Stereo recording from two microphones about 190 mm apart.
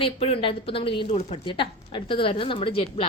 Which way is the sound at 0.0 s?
30° left (ahead or behind).